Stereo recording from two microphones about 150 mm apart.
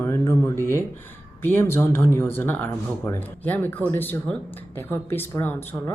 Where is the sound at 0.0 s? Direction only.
20° left (ahead or behind).